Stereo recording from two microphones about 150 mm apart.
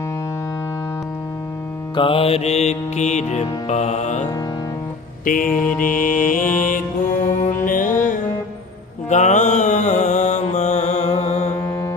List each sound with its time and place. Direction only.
2.0 s music: 35° left (ahead or behind)
5.2 s music: 65° left (ahead or behind)
9.0 s mantra: 50° left (ahead or behind)